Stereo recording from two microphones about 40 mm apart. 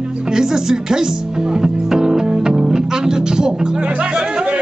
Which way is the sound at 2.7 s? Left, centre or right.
Centre.